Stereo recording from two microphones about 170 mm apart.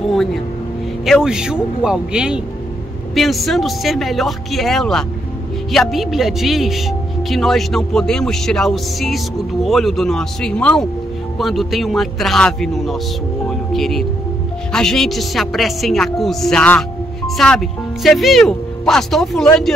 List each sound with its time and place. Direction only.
0.1 s speech: centre (ahead or behind)
13.5 s music: centre (ahead or behind)
14.7 s speech: 5° left (ahead or behind)